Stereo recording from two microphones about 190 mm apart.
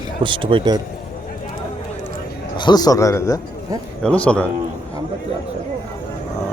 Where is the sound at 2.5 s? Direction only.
25° left (ahead or behind); by 4.5 s 5° left (ahead or behind).